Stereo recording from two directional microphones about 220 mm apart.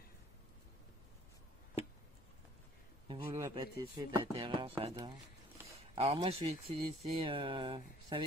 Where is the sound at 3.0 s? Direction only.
20° right (ahead or behind).